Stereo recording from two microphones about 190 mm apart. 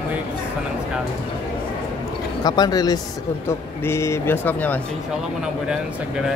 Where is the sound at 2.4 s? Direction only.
20° left (ahead or behind).